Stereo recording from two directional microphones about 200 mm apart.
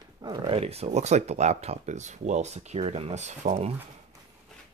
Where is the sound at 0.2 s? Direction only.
20° right (ahead or behind).